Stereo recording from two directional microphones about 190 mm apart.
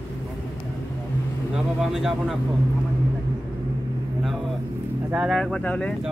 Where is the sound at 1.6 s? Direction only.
5° right (ahead or behind).